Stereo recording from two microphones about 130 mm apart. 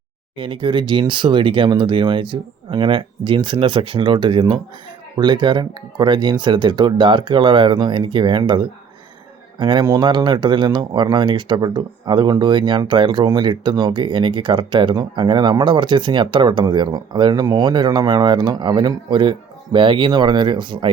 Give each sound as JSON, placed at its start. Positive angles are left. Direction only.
{"t": 0.3, "sound": "speech", "side_deg": -40}